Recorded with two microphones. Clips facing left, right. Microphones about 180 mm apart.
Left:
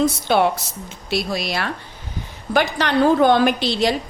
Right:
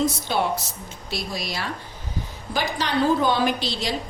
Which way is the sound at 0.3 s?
70° left (ahead or behind).